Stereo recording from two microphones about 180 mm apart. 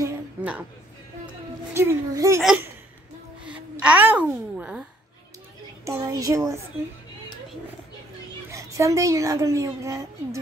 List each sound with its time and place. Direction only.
0.0 s a sound: 10° right (ahead or behind)
1.7 s a woman's voice: 15° right (ahead or behind)
5.9 s a woman's voice: 15° right (ahead or behind)
8.5 s a woman's voice: 15° right (ahead or behind)